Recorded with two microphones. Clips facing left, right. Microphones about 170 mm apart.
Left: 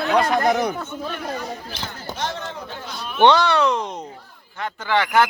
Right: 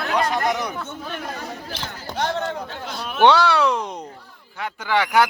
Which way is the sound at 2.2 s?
55° right (ahead or behind).